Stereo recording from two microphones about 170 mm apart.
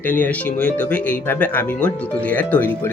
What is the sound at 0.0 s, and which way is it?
Speech, 10° left (ahead or behind).